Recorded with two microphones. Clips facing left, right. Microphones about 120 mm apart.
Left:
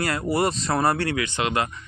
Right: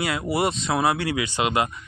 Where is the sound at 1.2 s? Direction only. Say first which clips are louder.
Right 1 dB; 15° right (ahead or behind).